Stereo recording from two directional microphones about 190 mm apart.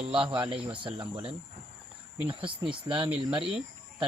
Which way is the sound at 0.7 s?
25° right (ahead or behind).